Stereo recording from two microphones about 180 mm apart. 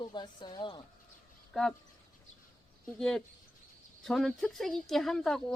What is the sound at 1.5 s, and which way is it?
Speech, centre (ahead or behind).